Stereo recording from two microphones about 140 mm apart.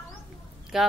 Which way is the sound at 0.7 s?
5° right (ahead or behind).